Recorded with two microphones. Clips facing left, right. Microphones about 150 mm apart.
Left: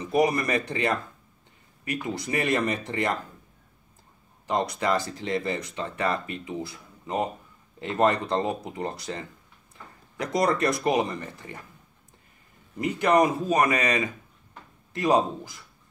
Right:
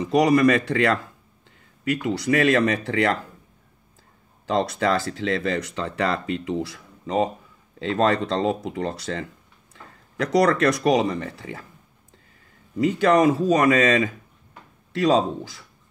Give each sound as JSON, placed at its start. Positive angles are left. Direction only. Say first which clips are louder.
{"t": 0.1, "sound": "speech", "louder": "right 6 dB", "side_deg": -90}
{"t": 4.5, "sound": "speech", "louder": "right 4 dB", "side_deg": -90}
{"t": 12.7, "sound": "speech", "louder": "right 4 dB", "side_deg": -90}